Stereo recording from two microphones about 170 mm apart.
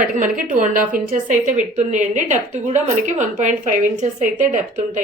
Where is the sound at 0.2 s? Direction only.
50° right (ahead or behind).